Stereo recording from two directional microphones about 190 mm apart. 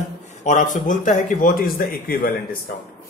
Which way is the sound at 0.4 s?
40° left (ahead or behind).